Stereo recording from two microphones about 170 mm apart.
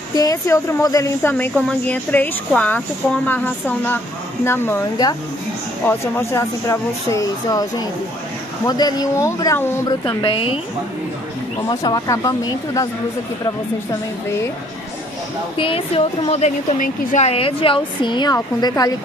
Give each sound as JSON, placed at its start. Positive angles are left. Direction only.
{"t": 0.1, "sound": "a woman's voice", "side_deg": 20}
{"t": 11.8, "sound": "speech", "side_deg": 20}
{"t": 15.5, "sound": "a woman's voice", "side_deg": 30}